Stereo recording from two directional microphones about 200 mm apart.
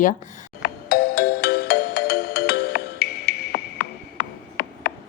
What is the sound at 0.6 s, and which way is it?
Ringtone, 50° left (ahead or behind).